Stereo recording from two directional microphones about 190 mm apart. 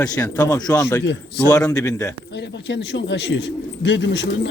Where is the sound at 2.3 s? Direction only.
65° left (ahead or behind).